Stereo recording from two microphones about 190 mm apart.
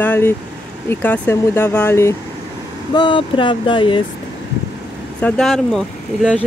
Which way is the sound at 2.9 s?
25° left (ahead or behind).